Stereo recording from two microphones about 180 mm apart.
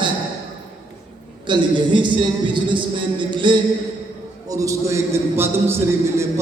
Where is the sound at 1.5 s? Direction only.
25° right (ahead or behind).